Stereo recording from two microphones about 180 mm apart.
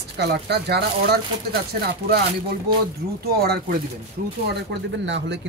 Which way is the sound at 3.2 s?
60° right (ahead or behind).